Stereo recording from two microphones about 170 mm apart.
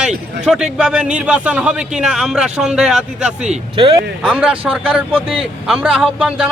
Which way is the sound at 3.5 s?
30° right (ahead or behind).